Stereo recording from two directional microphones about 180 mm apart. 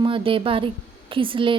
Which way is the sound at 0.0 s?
30° right (ahead or behind).